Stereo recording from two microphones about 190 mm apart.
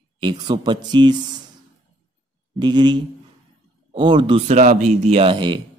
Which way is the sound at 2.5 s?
25° right (ahead or behind).